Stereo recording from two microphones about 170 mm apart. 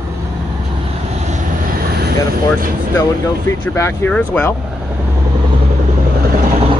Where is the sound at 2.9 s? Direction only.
15° left (ahead or behind).